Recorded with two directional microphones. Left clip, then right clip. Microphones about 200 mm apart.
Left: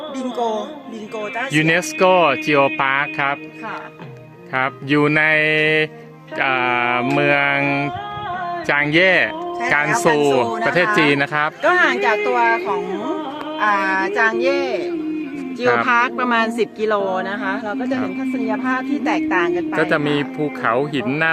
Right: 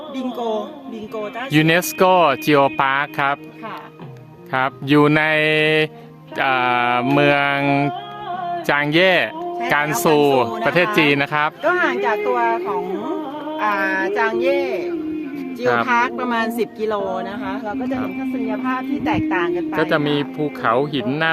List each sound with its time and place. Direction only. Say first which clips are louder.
1.5 s speech: right 1 dB; 30° right (ahead or behind)
4.5 s mantra: right 2 dB; 30° right (ahead or behind)
10.6 s a man's voice: left 1 dB; 10° right (ahead or behind)
11.6 s speech: left 6 dB; 50° left (ahead or behind)
15.8 s a woman's voice: left 2 dB; 30° left (ahead or behind)
18.4 s speech: left 3 dB; 50° left (ahead or behind)
19.7 s speech: right 1 dB; centre (ahead or behind)